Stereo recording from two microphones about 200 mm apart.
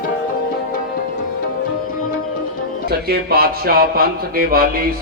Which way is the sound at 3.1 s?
50° right (ahead or behind).